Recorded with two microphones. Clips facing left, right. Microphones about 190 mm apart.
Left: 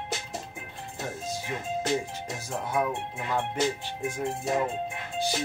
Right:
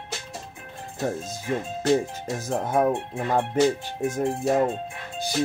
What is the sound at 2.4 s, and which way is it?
Speech, 45° right (ahead or behind).